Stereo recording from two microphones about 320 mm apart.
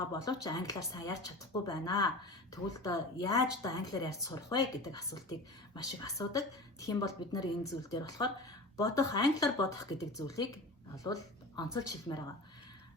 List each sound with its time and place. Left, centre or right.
0.1 s speech: centre